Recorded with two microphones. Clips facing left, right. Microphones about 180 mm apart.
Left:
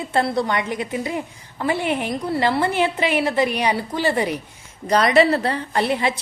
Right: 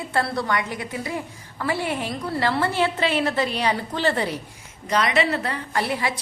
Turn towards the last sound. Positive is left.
turn(degrees=20)  # may be behind; listen again after turning